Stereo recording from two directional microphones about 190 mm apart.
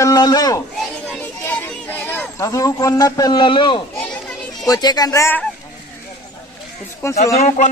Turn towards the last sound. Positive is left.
turn(degrees=40)  # may be behind; listen again after turning